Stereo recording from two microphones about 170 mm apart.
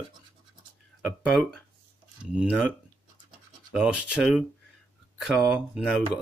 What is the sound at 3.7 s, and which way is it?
Speech, 5° right (ahead or behind).